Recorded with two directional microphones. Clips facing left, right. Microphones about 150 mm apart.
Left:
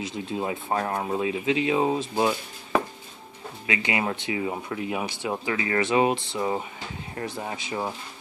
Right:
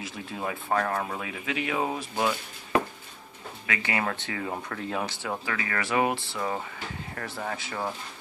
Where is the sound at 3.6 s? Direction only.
20° left (ahead or behind).